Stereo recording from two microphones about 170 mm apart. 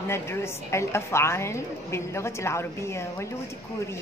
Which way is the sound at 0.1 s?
15° left (ahead or behind).